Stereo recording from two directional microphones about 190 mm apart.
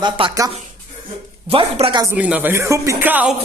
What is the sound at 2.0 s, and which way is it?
Speech, 5° right (ahead or behind).